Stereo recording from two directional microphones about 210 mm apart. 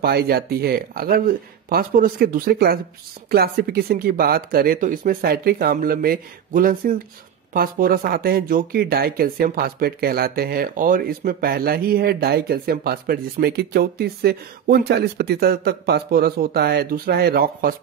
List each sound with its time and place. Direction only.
0.0 s speech: 50° right (ahead or behind)